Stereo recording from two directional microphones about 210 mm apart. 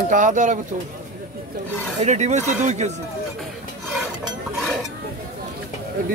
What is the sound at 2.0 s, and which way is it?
Speech, 35° right (ahead or behind).